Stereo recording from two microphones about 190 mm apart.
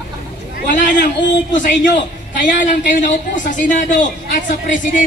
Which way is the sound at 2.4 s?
45° left (ahead or behind).